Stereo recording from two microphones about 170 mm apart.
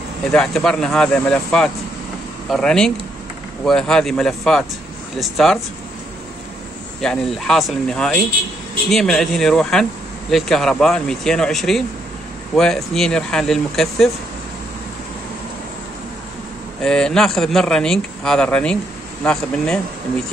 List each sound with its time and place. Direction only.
0.3 s speech: 5° left (ahead or behind)
7.0 s speech: centre (ahead or behind)
16.8 s speech: 5° left (ahead or behind)